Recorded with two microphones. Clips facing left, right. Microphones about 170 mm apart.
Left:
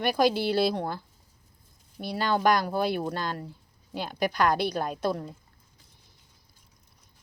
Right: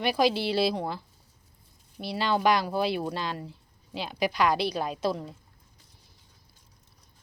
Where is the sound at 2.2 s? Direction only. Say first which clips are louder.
Even; 5° right (ahead or behind).